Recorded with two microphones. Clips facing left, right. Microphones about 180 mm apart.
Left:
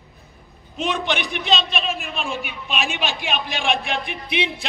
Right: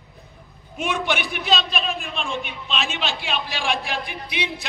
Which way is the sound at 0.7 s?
10° right (ahead or behind).